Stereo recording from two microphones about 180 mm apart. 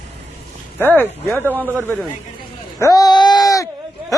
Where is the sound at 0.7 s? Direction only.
10° left (ahead or behind).